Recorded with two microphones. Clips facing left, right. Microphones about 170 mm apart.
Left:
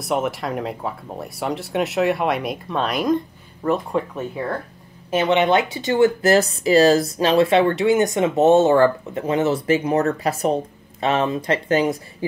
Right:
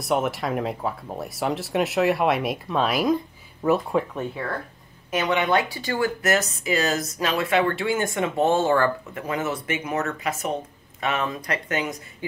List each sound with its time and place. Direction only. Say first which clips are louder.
0.0 s speech: left 1 dB; centre (ahead or behind)
5.1 s speech: left 5 dB; 25° left (ahead or behind)